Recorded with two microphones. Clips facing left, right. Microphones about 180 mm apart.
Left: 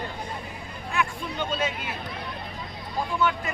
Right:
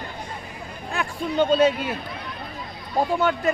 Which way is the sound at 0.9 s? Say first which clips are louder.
Right 5 dB; 35° right (ahead or behind).